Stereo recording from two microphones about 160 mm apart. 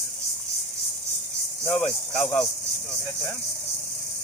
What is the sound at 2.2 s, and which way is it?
Speech, 15° left (ahead or behind).